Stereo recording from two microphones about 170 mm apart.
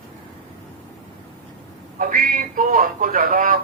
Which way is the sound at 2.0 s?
55° right (ahead or behind).